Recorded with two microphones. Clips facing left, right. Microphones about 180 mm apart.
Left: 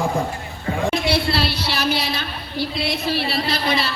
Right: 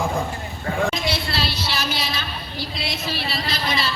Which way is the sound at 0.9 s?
60° left (ahead or behind).